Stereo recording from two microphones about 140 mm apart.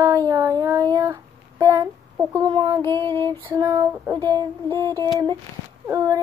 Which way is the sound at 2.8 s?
15° left (ahead or behind).